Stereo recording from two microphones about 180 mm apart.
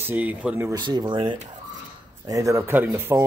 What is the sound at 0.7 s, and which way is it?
Speech, 25° right (ahead or behind).